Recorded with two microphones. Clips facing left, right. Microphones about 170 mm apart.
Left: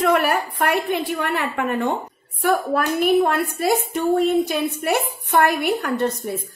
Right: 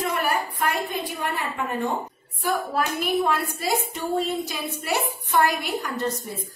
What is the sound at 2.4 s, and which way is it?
A woman's voice, 60° left (ahead or behind).